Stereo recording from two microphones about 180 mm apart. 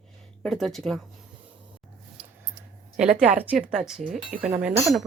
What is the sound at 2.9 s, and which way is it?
A woman's voice, 5° right (ahead or behind).